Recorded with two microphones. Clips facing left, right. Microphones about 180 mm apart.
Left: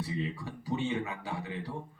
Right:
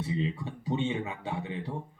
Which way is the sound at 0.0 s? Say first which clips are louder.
Right 3 dB; 25° right (ahead or behind).